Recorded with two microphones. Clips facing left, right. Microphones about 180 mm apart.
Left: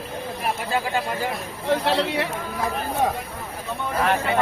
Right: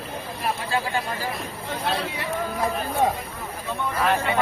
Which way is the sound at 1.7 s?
75° left (ahead or behind).